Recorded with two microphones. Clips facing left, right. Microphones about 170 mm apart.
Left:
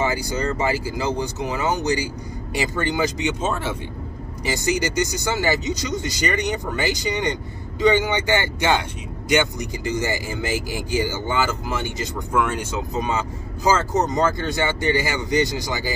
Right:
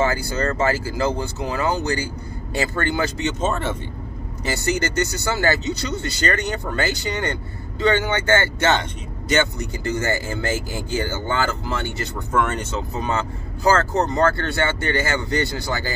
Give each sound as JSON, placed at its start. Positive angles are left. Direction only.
{"t": 0.0, "sound": "speech", "side_deg": 15}